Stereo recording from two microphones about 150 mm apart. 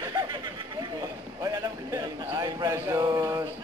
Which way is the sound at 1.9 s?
20° right (ahead or behind).